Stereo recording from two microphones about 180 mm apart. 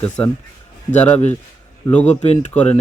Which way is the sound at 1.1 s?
40° left (ahead or behind).